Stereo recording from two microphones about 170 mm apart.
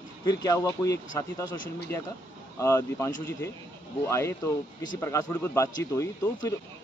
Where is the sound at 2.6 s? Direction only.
15° left (ahead or behind).